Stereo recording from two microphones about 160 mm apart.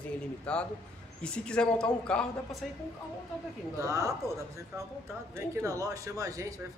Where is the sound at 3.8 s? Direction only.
20° right (ahead or behind).